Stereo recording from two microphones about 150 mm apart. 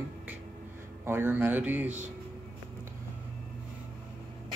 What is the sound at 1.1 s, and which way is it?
Speech, 15° right (ahead or behind).